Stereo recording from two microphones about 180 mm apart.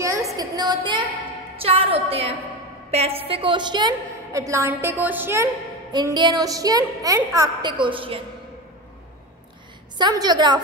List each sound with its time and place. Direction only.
0.0 s a sound: 15° right (ahead or behind)
1.6 s a woman's voice: 30° right (ahead or behind)
9.9 s a woman's voice: 25° right (ahead or behind)